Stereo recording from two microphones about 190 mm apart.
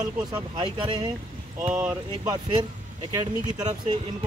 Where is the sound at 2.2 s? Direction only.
25° right (ahead or behind).